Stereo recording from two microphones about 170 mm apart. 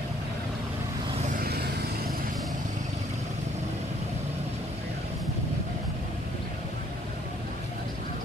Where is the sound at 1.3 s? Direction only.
65° right (ahead or behind).